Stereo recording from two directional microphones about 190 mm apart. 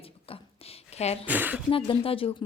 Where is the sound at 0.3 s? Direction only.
30° left (ahead or behind).